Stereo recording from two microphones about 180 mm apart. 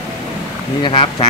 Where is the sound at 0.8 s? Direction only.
30° left (ahead or behind).